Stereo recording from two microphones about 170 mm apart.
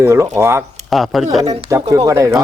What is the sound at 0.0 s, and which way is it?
Speech, 15° right (ahead or behind).